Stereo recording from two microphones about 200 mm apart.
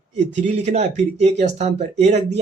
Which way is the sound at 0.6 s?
35° right (ahead or behind).